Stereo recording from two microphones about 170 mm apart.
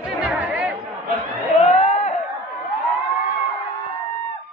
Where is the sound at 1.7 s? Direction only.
35° left (ahead or behind).